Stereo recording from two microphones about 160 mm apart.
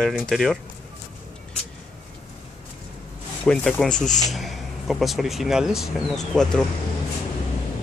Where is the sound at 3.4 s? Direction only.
5° left (ahead or behind).